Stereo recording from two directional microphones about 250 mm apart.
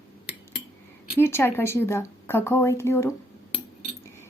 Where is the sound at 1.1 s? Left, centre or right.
Centre.